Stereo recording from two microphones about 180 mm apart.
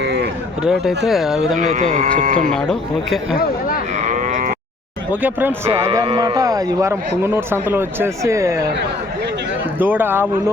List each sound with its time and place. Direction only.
0.0 s a sound: 70° right (ahead or behind)
0.6 s speech: centre (ahead or behind)
1.5 s speech: 45° right (ahead or behind)
2.5 s speech: centre (ahead or behind)
3.9 s sheep: 40° right (ahead or behind)
5.1 s speech: 10° right (ahead or behind)
6.1 s speech: 25° right (ahead or behind)
9.7 s speech: 10° right (ahead or behind)